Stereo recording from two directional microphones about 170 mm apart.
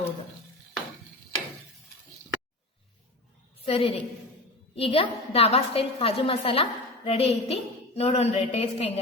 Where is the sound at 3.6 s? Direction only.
35° left (ahead or behind).